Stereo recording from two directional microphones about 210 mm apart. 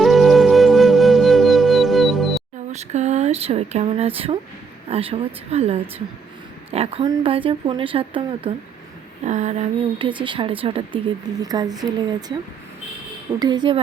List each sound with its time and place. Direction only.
0.0 s music: centre (ahead or behind)
2.7 s a woman's voice: 35° right (ahead or behind)
13.4 s a woman's voice: 20° right (ahead or behind)